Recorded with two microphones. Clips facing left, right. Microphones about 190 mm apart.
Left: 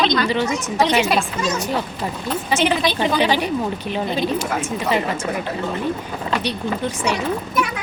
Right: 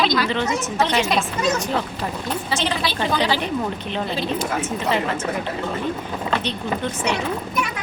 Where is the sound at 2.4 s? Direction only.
15° left (ahead or behind).